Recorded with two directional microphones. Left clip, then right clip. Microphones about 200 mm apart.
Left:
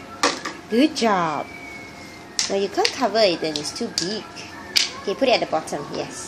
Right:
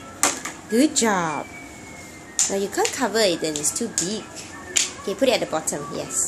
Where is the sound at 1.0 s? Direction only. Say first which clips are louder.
Left 2 dB; centre (ahead or behind).